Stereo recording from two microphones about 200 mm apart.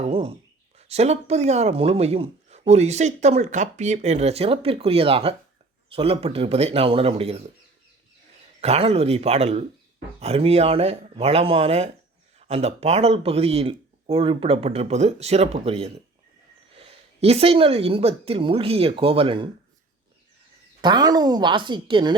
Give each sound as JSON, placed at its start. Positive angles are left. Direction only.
{"t": 0.0, "sound": "speech", "side_deg": -30}
{"t": 8.6, "sound": "speech", "side_deg": -30}
{"t": 20.8, "sound": "speech", "side_deg": -20}